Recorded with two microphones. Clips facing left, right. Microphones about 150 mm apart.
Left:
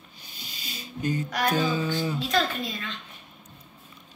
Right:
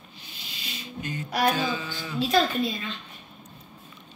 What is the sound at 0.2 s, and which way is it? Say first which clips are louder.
Music: even; 40° left (ahead or behind).